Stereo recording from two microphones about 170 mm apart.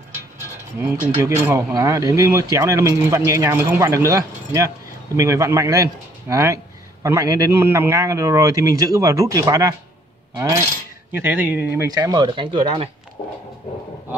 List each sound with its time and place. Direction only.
1.0 s speech: 15° right (ahead or behind)
11.1 s speech: 10° right (ahead or behind); by 12.9 s 35° right (ahead or behind)